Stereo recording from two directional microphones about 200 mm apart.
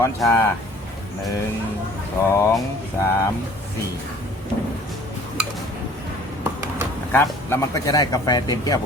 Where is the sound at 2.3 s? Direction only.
15° left (ahead or behind).